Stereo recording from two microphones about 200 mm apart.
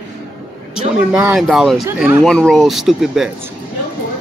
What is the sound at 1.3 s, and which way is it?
Speech, centre (ahead or behind).